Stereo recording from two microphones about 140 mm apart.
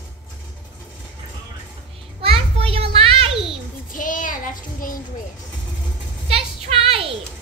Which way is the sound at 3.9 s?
70° left (ahead or behind).